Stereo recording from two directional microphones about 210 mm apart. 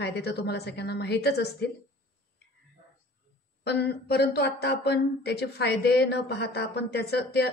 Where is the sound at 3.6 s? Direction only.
50° left (ahead or behind).